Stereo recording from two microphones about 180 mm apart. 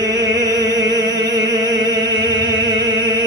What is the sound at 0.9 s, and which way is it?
Music, 25° right (ahead or behind).